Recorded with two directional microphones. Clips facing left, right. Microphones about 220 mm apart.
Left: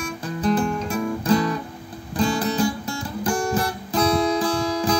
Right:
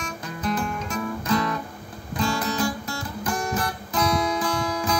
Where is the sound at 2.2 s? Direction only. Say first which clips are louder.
Left 4 dB; 30° left (ahead or behind).